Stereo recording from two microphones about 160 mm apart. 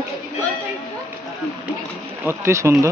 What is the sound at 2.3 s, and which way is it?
Speech, 15° right (ahead or behind).